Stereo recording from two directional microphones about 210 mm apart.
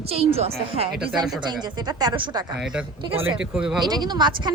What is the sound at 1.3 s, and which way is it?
A woman's voice, 20° right (ahead or behind).